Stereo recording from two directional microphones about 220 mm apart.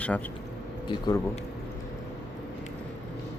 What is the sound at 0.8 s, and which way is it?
Speech, 20° left (ahead or behind).